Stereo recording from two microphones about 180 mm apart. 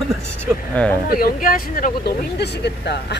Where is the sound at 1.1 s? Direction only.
50° left (ahead or behind); by 3.2 s 70° left (ahead or behind).